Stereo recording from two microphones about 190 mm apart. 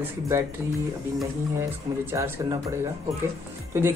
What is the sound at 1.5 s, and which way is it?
Speech, 15° right (ahead or behind).